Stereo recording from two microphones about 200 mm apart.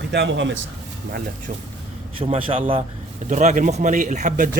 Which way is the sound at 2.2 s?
30° right (ahead or behind).